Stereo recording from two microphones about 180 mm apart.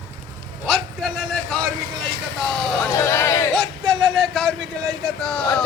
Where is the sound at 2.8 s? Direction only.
15° left (ahead or behind).